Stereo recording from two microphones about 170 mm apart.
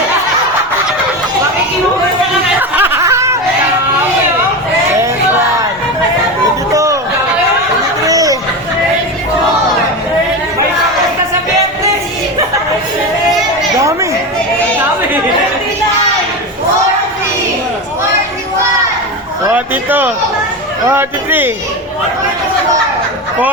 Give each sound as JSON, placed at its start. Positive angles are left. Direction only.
{"t": 2.6, "sound": "snicker", "side_deg": -10}
{"t": 6.7, "sound": "a sound", "side_deg": -20}
{"t": 8.0, "sound": "chatter", "side_deg": -20}
{"t": 13.8, "sound": "chatter", "side_deg": -15}
{"t": 19.5, "sound": "a sound", "side_deg": -10}
{"t": 20.9, "sound": "speech", "side_deg": -10}